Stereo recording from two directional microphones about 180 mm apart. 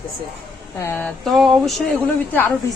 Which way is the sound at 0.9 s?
5° left (ahead or behind).